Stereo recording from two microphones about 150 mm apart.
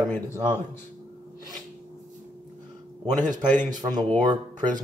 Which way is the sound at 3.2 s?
25° right (ahead or behind).